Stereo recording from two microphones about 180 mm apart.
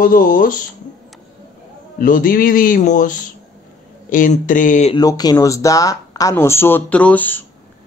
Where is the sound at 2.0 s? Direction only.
50° left (ahead or behind).